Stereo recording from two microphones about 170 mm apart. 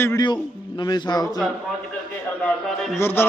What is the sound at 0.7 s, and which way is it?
Speech, 25° left (ahead or behind).